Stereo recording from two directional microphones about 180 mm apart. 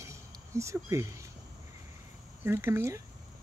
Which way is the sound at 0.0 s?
15° right (ahead or behind).